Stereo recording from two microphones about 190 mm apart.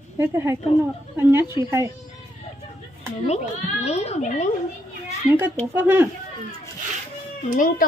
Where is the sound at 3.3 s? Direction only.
35° left (ahead or behind).